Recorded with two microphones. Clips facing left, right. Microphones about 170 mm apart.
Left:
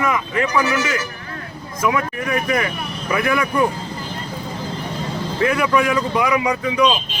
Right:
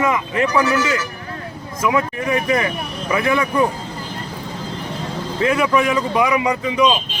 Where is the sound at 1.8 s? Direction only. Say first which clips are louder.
Right 1 dB; 25° right (ahead or behind).